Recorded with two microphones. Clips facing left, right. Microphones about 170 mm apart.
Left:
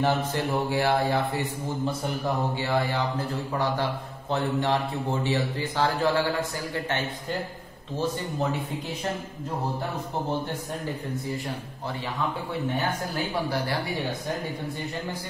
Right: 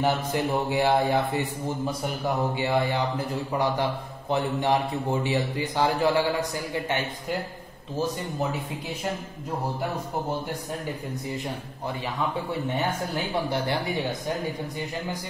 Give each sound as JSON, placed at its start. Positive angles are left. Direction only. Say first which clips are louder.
{"t": 0.0, "sound": "a man's voice", "louder": "even", "side_deg": -15}
{"t": 13.5, "sound": "a man's voice", "louder": "right 1 dB", "side_deg": -20}